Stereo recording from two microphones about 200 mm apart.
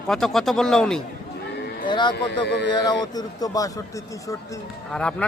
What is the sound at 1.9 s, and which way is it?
A man's voice, 20° left (ahead or behind).